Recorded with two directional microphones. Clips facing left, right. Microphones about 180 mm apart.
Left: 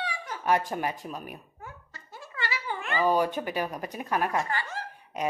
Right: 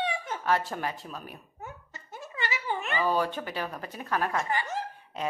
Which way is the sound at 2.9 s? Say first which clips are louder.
Left 4 dB; 15° left (ahead or behind).